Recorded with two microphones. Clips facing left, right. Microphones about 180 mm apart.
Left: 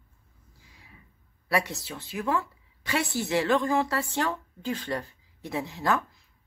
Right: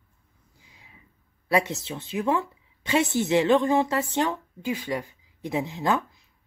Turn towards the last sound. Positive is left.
turn(degrees=-20)  # may be behind; listen again after turning